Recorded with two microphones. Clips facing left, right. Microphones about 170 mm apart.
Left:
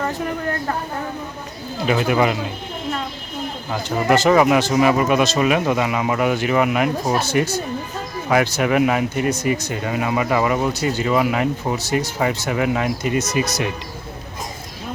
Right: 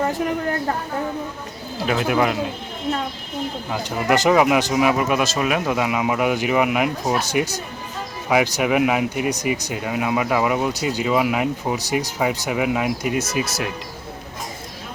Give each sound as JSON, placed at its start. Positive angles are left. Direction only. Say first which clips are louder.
{"t": 1.9, "sound": "speech", "louder": "left 2 dB", "side_deg": 0}
{"t": 3.7, "sound": "speech", "louder": "left 3 dB", "side_deg": -15}